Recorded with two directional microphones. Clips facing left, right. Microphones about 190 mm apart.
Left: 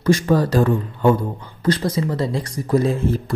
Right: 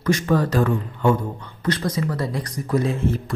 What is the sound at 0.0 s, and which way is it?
Speech, 35° left (ahead or behind).